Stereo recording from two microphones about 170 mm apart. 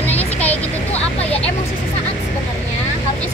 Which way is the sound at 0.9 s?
35° left (ahead or behind).